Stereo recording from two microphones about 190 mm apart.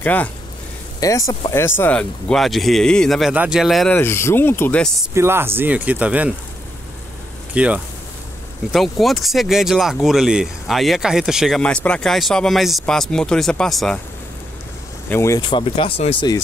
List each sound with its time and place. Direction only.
0.0 s speech: 10° left (ahead or behind)
5.1 s speech: 15° right (ahead or behind)
7.5 s speech: 5° right (ahead or behind)
15.0 s speech: 15° left (ahead or behind)
15.4 s speech: 30° left (ahead or behind)